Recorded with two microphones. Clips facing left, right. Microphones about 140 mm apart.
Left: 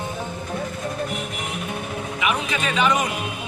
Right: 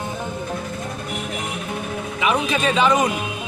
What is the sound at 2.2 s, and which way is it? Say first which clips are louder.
Speech: right 5 dB; 30° right (ahead or behind).